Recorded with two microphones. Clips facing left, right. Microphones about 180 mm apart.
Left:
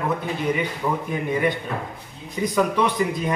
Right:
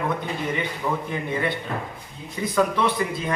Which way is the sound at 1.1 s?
15° left (ahead or behind).